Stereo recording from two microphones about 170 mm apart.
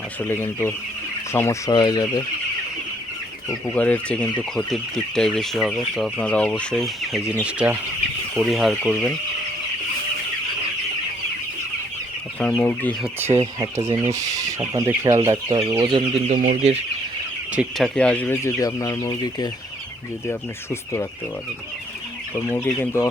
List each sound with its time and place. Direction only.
0.3 s speech: 10° left (ahead or behind)
3.7 s speech: 10° left (ahead or behind)
12.4 s speech: 10° left (ahead or behind)
13.1 s speech: 15° right (ahead or behind)
15.8 s speech: 30° right (ahead or behind)
16.3 s speech: 45° right (ahead or behind)
17.5 s speech: 5° right (ahead or behind); by 21.1 s 15° left (ahead or behind)
22.4 s speech: 15° left (ahead or behind)